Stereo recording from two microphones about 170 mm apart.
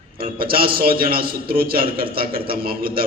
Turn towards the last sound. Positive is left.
turn(degrees=-60)  # may be behind; listen again after turning